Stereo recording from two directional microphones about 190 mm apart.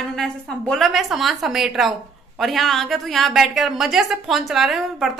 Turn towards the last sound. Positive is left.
turn(degrees=0)  # may be behind; listen again after turning